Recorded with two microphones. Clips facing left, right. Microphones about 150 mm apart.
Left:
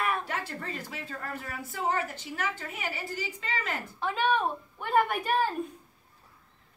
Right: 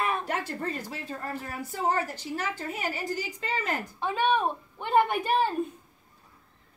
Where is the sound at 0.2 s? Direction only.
45° right (ahead or behind).